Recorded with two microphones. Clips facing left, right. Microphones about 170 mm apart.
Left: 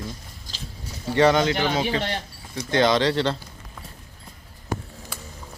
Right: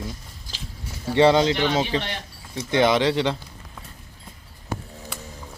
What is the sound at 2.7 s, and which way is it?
Speech, 15° right (ahead or behind).